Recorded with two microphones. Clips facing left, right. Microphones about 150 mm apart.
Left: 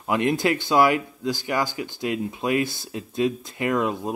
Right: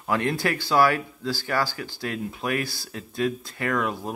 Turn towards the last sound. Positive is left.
turn(degrees=20)  # may be behind; listen again after turning